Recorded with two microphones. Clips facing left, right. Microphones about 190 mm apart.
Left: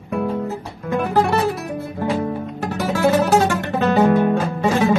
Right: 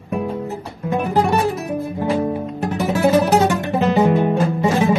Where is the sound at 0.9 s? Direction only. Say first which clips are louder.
Even; 15° right (ahead or behind).